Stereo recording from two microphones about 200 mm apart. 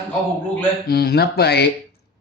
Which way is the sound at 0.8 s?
50° left (ahead or behind).